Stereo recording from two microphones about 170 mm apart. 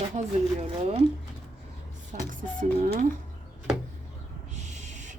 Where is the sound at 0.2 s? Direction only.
40° right (ahead or behind).